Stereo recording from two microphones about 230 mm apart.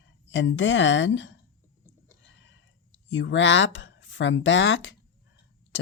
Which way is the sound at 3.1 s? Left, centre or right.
Left.